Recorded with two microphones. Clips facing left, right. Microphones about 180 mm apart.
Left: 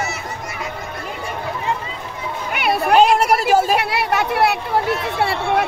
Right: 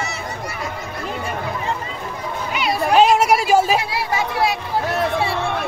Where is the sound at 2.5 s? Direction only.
60° left (ahead or behind).